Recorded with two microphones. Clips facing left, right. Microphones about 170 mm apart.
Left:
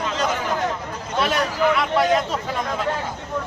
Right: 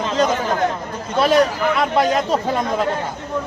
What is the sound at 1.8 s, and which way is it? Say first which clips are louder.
Speech: right 2 dB; 40° right (ahead or behind).